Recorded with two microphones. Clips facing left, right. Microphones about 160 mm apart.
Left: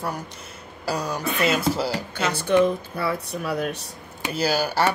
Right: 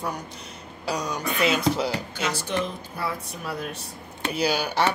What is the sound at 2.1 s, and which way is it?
Speech, 55° left (ahead or behind).